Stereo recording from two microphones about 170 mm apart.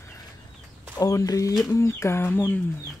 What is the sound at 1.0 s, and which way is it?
Speech, 20° left (ahead or behind).